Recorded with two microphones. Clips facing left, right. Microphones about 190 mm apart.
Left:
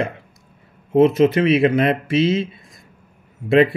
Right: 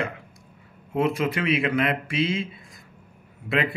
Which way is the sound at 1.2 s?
25° left (ahead or behind).